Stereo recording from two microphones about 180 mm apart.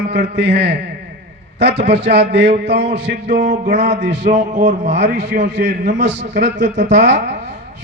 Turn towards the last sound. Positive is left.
turn(degrees=-80)